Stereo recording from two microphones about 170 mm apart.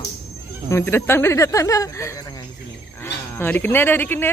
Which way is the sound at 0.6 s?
15° left (ahead or behind).